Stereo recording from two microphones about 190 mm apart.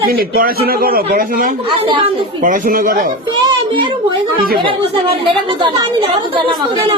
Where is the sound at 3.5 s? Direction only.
25° right (ahead or behind).